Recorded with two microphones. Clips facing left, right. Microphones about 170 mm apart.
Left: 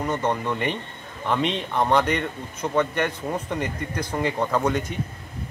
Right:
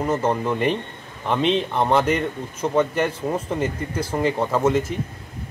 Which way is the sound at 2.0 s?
30° right (ahead or behind).